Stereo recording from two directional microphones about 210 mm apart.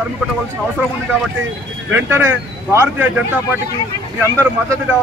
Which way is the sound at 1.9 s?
10° right (ahead or behind).